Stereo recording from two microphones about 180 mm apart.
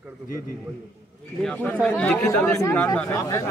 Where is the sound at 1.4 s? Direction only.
5° left (ahead or behind).